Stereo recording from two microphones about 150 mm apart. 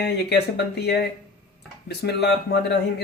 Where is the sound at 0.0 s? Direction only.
90° left.